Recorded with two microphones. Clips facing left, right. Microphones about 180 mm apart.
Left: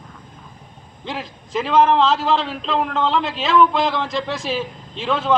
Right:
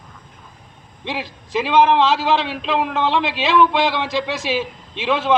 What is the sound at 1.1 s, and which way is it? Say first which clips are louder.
A man's voice: right 2 dB; 10° right (ahead or behind).